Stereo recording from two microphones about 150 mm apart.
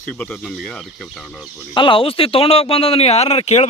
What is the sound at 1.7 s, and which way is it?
Speech, 35° left (ahead or behind).